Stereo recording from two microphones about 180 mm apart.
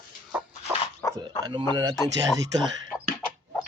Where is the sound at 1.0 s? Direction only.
15° left (ahead or behind).